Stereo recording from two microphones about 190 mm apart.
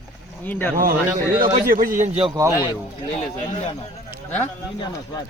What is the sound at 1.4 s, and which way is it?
Speech, 45° right (ahead or behind).